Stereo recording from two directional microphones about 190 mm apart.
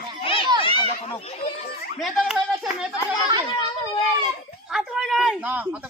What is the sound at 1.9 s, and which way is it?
Speech, centre (ahead or behind).